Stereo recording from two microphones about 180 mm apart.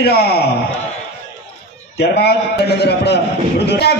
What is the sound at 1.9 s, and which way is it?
A man's voice, 65° left (ahead or behind).